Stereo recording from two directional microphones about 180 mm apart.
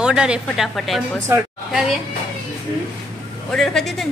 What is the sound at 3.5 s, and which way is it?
Speech, 5° left (ahead or behind).